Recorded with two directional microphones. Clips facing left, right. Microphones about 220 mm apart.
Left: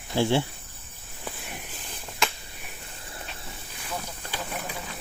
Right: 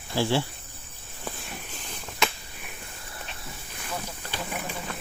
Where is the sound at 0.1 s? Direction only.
20° left (ahead or behind).